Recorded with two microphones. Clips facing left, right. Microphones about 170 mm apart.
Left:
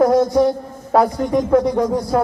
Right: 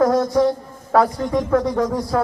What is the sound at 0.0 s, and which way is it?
A man's voice, 20° left (ahead or behind).